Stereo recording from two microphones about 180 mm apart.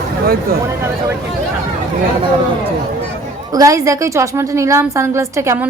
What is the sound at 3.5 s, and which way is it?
A woman's voice, 20° right (ahead or behind).